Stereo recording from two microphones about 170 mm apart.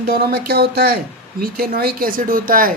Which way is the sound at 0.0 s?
65° right (ahead or behind).